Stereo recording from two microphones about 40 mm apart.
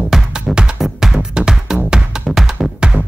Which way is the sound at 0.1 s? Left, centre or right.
Centre.